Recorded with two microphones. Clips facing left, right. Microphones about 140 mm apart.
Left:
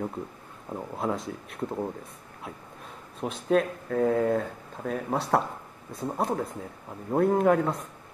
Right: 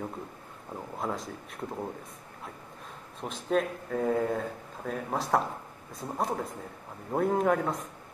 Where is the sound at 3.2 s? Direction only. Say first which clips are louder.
Left 4 dB; centre (ahead or behind).